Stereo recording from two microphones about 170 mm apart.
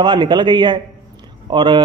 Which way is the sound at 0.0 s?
25° right (ahead or behind).